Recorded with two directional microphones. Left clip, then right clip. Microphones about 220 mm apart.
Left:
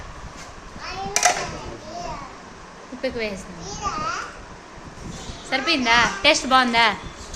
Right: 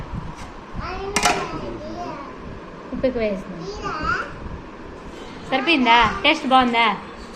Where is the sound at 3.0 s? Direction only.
15° left (ahead or behind).